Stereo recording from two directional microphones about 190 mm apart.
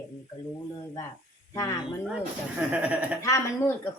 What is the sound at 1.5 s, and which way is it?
Speech, 20° left (ahead or behind).